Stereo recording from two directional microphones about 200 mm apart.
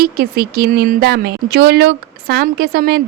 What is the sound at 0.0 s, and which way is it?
A woman's voice, 50° right (ahead or behind).